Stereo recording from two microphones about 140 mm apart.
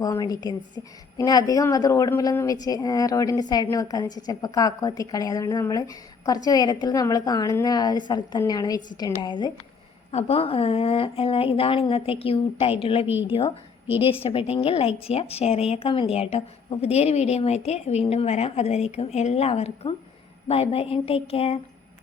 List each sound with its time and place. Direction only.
0.0 s a woman's voice: 25° left (ahead or behind)
10.1 s speech: 50° left (ahead or behind)